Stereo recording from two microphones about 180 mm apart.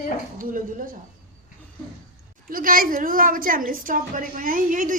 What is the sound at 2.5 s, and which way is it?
A woman's voice, 50° right (ahead or behind).